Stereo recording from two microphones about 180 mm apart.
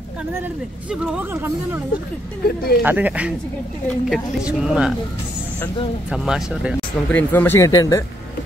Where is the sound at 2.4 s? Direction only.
60° left (ahead or behind).